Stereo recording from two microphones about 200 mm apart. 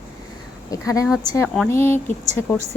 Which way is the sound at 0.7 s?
15° left (ahead or behind).